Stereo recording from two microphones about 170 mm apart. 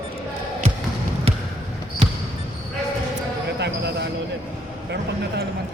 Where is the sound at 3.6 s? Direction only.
80° right.